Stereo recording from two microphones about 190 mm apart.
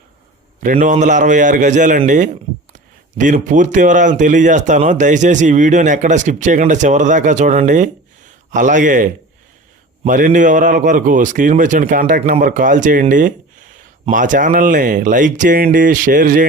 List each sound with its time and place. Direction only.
0.6 s speech: 45° right (ahead or behind)
10.1 s a man's voice: 45° right (ahead or behind)